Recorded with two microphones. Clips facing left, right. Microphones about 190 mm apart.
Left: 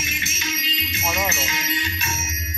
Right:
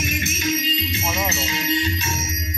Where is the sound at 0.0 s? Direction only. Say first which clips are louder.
Right 7 dB; 50° right (ahead or behind); by 2.0 s 30° right (ahead or behind).